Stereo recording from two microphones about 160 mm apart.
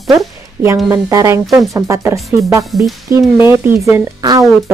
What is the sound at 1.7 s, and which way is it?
Speech, 20° right (ahead or behind).